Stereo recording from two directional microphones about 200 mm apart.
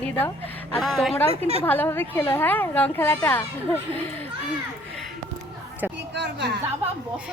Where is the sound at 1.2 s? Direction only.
30° right (ahead or behind).